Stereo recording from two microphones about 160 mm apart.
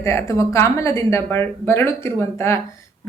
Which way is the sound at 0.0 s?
15° left (ahead or behind).